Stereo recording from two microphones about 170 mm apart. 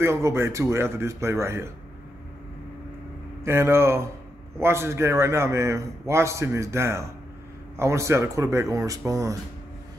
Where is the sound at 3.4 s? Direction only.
15° right (ahead or behind).